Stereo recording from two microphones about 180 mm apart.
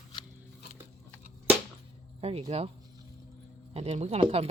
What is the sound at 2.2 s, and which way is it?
Speech, 35° right (ahead or behind).